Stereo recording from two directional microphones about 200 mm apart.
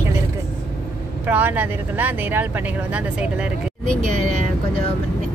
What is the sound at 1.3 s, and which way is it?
Speech, 10° right (ahead or behind).